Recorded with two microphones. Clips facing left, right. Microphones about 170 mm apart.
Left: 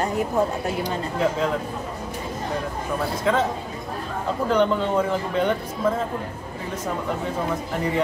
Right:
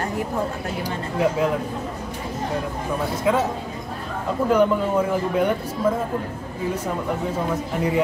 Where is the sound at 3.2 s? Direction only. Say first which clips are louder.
Right 1 dB; 10° right (ahead or behind).